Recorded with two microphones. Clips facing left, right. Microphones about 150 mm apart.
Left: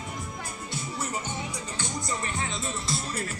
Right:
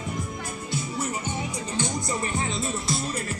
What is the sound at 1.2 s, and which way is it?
Music, 15° right (ahead or behind).